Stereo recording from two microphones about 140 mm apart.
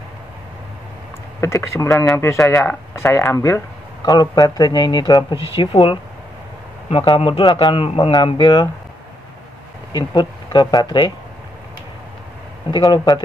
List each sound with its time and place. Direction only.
1.4 s a man's voice: 20° left (ahead or behind)
9.9 s a man's voice: 30° left (ahead or behind)
12.7 s a man's voice: 30° left (ahead or behind)